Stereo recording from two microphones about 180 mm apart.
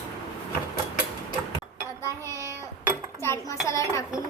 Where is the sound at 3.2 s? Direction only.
15° left (ahead or behind).